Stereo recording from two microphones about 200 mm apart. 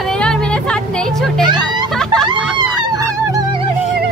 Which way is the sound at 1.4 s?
20° right (ahead or behind).